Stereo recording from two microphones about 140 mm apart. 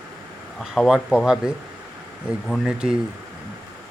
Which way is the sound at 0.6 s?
Centre (ahead or behind).